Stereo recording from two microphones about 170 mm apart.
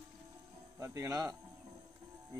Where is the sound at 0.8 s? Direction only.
20° right (ahead or behind).